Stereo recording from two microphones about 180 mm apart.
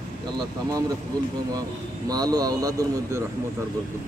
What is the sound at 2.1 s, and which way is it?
Speech, 20° right (ahead or behind).